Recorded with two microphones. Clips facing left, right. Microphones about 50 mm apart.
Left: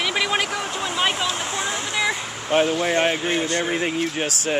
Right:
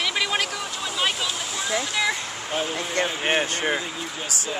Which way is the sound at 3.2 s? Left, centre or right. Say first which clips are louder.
Even; right.